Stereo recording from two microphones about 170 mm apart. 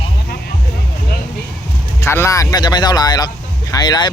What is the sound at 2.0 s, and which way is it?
Speech, 15° left (ahead or behind).